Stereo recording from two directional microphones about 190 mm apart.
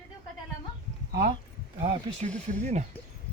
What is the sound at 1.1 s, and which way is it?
Speech, 55° right (ahead or behind).